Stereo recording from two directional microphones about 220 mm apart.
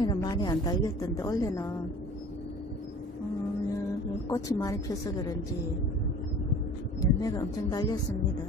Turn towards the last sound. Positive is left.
turn(degrees=15)  # may be behind; listen again after turning